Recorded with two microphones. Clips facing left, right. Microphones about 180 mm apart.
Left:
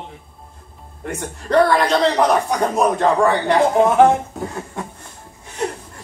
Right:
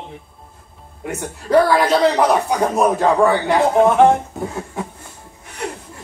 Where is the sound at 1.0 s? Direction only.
5° right (ahead or behind).